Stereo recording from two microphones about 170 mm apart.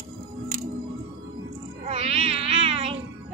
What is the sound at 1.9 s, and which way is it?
Music, 35° right (ahead or behind).